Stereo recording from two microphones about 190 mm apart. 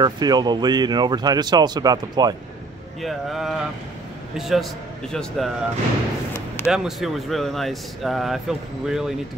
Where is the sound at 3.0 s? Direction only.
Centre (ahead or behind).